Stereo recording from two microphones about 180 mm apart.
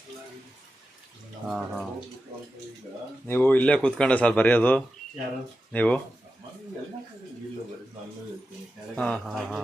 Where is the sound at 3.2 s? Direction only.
10° left (ahead or behind).